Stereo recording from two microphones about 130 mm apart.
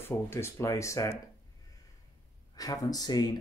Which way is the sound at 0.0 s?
20° left (ahead or behind).